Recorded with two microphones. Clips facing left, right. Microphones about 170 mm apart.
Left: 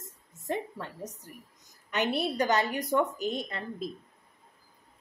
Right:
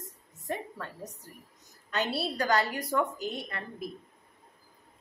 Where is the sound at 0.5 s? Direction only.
20° left (ahead or behind).